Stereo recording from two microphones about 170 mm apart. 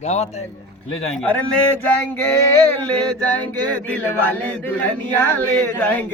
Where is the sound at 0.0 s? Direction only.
40° left (ahead or behind).